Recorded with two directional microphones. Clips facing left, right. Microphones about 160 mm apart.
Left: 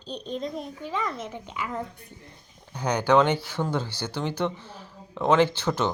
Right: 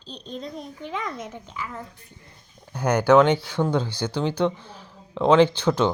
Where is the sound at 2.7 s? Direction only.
5° right (ahead or behind).